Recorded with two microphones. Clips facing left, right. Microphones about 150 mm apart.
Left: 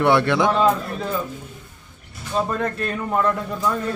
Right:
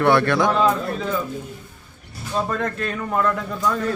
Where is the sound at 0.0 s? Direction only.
20° left (ahead or behind).